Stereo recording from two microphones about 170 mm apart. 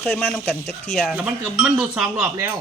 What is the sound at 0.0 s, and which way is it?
Speech, 10° left (ahead or behind).